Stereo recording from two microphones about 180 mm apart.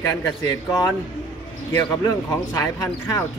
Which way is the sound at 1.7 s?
15° left (ahead or behind).